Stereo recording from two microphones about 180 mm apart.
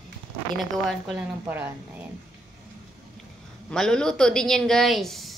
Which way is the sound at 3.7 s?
5° left (ahead or behind).